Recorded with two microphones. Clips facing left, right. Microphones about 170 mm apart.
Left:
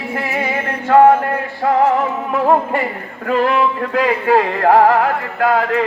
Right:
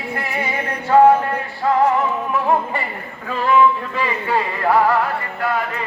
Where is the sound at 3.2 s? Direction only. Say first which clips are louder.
Left 1 dB; 65° left (ahead or behind).